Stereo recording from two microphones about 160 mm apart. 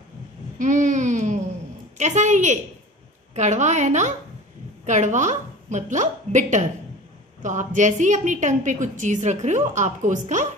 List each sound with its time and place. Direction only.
0.6 s a woman's voice: 50° right (ahead or behind)